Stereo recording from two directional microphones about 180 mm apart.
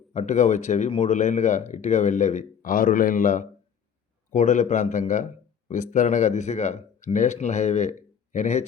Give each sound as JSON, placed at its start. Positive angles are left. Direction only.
{"t": 0.1, "sound": "speech", "side_deg": 40}